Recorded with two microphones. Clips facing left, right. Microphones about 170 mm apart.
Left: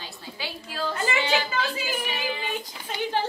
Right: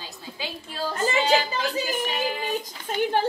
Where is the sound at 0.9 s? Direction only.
40° right (ahead or behind).